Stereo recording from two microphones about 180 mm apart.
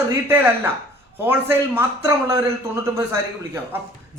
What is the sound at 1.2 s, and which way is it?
A man's voice, 10° right (ahead or behind).